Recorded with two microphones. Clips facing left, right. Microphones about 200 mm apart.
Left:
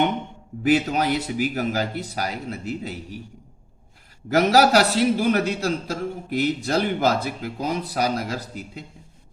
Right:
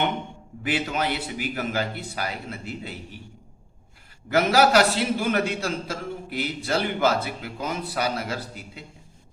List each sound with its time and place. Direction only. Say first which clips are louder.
0.6 s a man's voice: left 6 dB; 40° left (ahead or behind)
4.3 s a man's voice: left 2 dB; 40° left (ahead or behind)